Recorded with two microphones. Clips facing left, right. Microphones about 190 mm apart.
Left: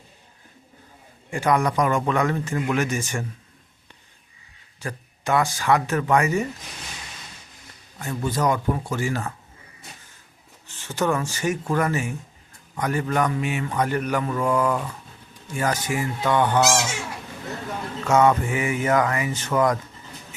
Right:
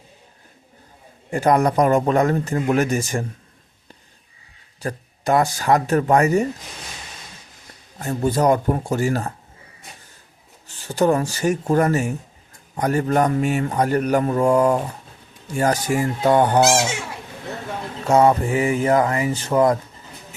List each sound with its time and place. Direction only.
1.3 s speech: 40° right (ahead or behind)
4.8 s speech: 40° right (ahead or behind)
7.9 s speech: 40° right (ahead or behind)
10.7 s speech: 35° right (ahead or behind)
18.0 s speech: 35° right (ahead or behind)